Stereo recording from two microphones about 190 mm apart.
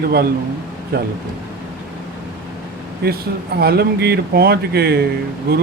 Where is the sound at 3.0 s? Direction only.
55° right (ahead or behind).